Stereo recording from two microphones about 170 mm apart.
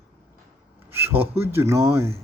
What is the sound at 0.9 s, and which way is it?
A man's voice, 15° right (ahead or behind).